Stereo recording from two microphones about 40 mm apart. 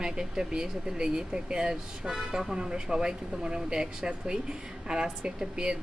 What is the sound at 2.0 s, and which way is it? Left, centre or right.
Speech, centre.